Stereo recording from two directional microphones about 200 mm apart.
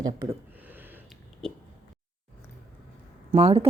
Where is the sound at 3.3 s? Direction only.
30° right (ahead or behind).